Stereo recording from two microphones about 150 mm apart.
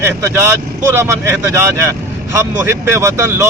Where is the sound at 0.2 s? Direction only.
15° right (ahead or behind).